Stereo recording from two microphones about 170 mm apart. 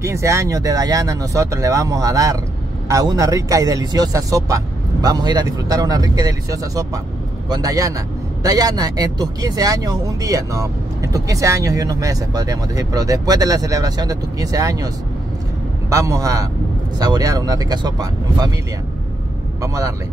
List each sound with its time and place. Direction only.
0.0 s a man's voice: 15° right (ahead or behind)
15.9 s a man's voice: 20° right (ahead or behind)
19.6 s a man's voice: 20° right (ahead or behind)